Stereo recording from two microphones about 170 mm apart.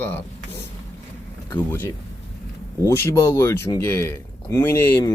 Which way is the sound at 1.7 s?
15° left (ahead or behind).